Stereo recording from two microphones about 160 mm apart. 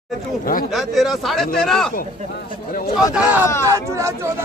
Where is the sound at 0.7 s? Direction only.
Centre (ahead or behind).